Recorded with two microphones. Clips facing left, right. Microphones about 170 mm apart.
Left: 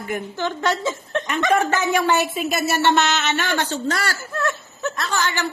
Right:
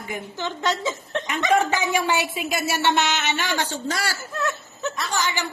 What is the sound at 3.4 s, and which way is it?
Speech, 55° left (ahead or behind).